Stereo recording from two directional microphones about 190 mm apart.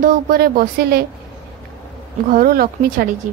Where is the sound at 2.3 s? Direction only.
50° right (ahead or behind).